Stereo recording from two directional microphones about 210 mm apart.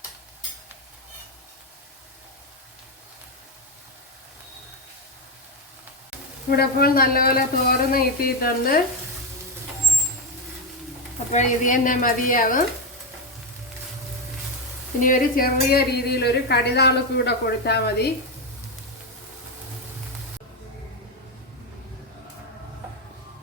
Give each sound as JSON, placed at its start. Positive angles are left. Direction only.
{"t": 6.6, "sound": "a woman's voice", "side_deg": 45}
{"t": 11.3, "sound": "speech", "side_deg": 35}
{"t": 15.0, "sound": "a woman's voice", "side_deg": 40}